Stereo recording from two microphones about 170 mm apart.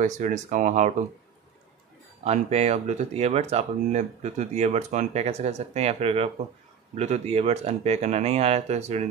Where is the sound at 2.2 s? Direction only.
40° right (ahead or behind).